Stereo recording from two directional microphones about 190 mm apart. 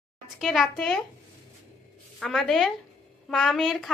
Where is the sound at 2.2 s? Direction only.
5° left (ahead or behind).